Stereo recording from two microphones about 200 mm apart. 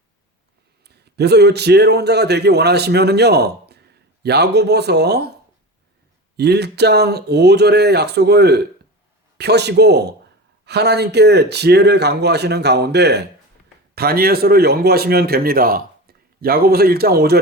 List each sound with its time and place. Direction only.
0.9 s a man's voice: 55° right (ahead or behind)
6.3 s a man's voice: 55° right (ahead or behind)